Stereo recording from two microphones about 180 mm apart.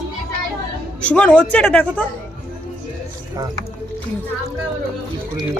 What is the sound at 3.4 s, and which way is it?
Speech, 20° right (ahead or behind).